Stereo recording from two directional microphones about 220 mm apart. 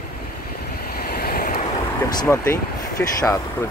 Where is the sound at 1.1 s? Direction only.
45° left (ahead or behind).